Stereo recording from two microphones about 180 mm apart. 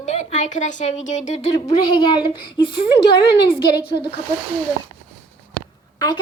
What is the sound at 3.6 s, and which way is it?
Speech, 60° left (ahead or behind).